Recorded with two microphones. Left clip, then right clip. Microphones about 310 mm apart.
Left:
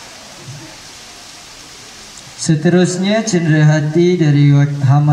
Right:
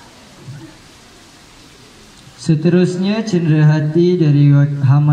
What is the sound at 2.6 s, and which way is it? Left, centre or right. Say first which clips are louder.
A man's voice: left 2 dB; left.